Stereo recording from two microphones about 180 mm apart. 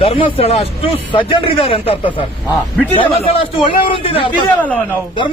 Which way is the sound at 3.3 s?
30° left (ahead or behind).